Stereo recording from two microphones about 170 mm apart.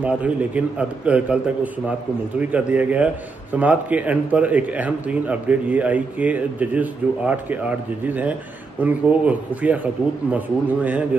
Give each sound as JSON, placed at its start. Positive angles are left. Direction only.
{"t": 0.0, "sound": "a man's voice", "side_deg": -10}